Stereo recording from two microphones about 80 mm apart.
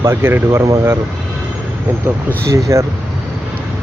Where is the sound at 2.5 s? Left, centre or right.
Right.